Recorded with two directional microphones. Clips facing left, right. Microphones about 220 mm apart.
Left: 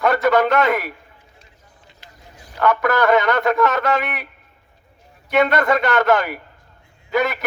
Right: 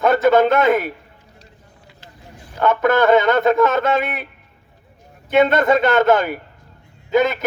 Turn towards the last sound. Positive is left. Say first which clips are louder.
# right 4 dB
turn(degrees=-20)  # may be behind; listen again after turning